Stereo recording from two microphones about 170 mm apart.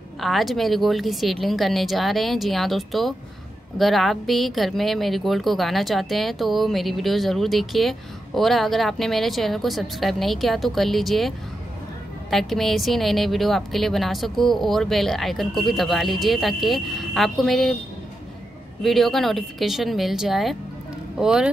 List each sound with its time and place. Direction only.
0.2 s a woman's voice: centre (ahead or behind)
18.8 s a woman's voice: centre (ahead or behind)